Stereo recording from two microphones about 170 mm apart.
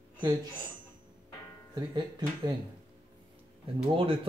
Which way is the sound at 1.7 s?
25° right (ahead or behind).